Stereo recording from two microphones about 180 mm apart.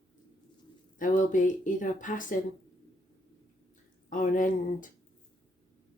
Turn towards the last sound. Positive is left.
turn(degrees=50)  # may be behind; listen again after turning